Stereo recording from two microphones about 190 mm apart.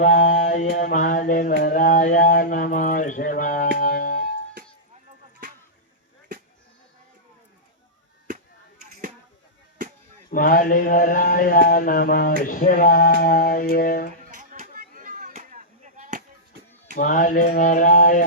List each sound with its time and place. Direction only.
0.0 s mantra: 40° left (ahead or behind)
3.8 s music: 45° left (ahead or behind)
10.3 s mantra: 50° left (ahead or behind)
14.3 s chop: 45° right (ahead or behind)
17.0 s mantra: 45° left (ahead or behind)